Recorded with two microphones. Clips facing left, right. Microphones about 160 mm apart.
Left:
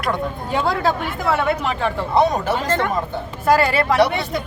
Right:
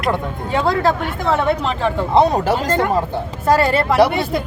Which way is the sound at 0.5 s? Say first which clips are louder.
Right 3 dB; centre (ahead or behind).